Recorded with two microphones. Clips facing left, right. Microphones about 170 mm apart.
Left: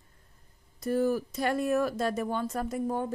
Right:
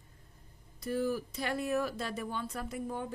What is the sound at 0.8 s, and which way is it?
Speech, 50° left (ahead or behind).